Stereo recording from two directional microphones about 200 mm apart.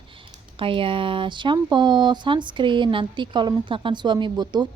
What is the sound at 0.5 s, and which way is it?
Speech, 25° right (ahead or behind).